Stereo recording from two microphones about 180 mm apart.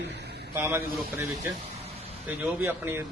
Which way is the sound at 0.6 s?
15° right (ahead or behind).